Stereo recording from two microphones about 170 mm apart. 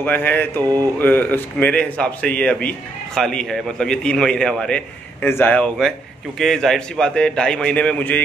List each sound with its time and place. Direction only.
0.0 s a man's voice: 10° left (ahead or behind)
0.6 s mantra: 20° right (ahead or behind)
0.9 s a man's voice: 10° left (ahead or behind)